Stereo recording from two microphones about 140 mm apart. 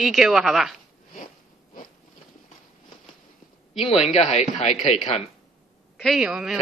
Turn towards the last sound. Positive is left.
turn(degrees=-5)  # may be behind; listen again after turning